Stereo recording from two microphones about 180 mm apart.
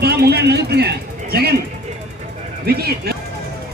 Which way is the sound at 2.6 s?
60° right (ahead or behind).